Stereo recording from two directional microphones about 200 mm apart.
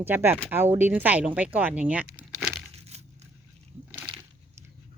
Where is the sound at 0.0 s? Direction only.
10° right (ahead or behind).